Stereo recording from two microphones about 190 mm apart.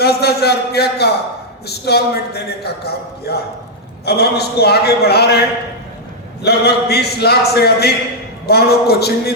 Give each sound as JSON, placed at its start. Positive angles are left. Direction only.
{"t": 0.0, "sound": "a man's voice", "side_deg": 55}